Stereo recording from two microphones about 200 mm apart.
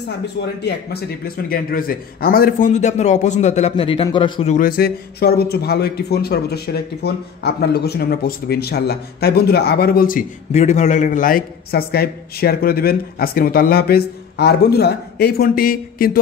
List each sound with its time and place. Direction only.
0.6 s a man's voice: 55° left (ahead or behind); by 4.6 s 25° left (ahead or behind)
4.6 s speech: 45° left (ahead or behind)